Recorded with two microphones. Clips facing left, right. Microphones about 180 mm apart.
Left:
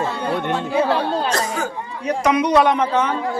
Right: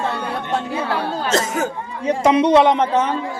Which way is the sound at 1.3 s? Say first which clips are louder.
Right 3 dB; 25° right (ahead or behind).